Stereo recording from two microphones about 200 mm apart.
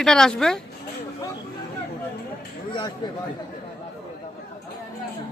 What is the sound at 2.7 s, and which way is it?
Speech, 20° left (ahead or behind).